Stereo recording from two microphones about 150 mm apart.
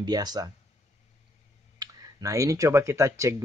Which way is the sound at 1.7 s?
25° right (ahead or behind).